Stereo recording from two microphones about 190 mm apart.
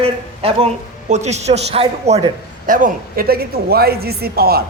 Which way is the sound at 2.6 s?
45° right (ahead or behind).